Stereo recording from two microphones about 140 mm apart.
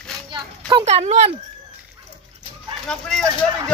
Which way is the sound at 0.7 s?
45° right (ahead or behind).